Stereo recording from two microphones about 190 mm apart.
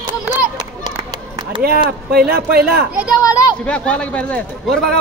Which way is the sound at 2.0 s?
50° right (ahead or behind).